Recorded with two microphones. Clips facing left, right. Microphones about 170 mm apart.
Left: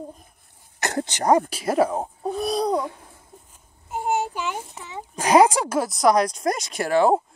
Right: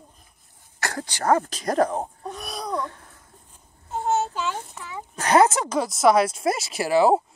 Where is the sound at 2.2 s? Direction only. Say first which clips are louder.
Left 10 dB; 35° left (ahead or behind).